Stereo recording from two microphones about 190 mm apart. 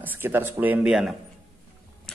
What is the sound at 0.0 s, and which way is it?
Speech, 10° right (ahead or behind).